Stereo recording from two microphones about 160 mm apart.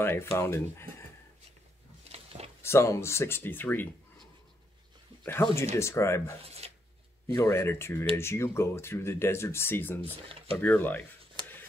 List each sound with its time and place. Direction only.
0.0 s speech: 15° left (ahead or behind)
2.1 s a sound: 40° right (ahead or behind)
2.6 s speech: 15° left (ahead or behind)
5.2 s speech: 15° left (ahead or behind)
6.4 s a sound: 40° right (ahead or behind)
7.3 s speech: 15° left (ahead or behind)
10.0 s speech: 35° right (ahead or behind)
10.6 s speech: 10° left (ahead or behind)